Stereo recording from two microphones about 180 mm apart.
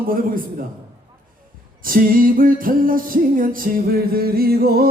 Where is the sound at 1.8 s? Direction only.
50° right (ahead or behind).